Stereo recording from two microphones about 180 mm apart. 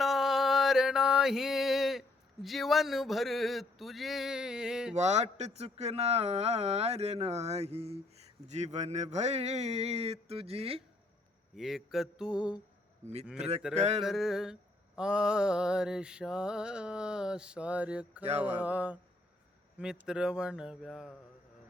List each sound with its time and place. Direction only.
0.0 s a sound: centre (ahead or behind)
4.9 s speech: 40° right (ahead or behind)
11.5 s mantra: centre (ahead or behind)
13.7 s speech: 35° right (ahead or behind)
14.0 s mantra: centre (ahead or behind)